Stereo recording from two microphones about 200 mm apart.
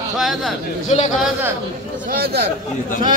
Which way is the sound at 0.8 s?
35° left (ahead or behind).